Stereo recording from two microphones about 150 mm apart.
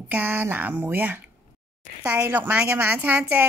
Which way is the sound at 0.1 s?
10° right (ahead or behind).